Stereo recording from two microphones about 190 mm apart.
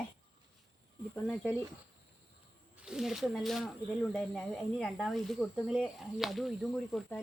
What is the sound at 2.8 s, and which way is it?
Speech, 5° right (ahead or behind).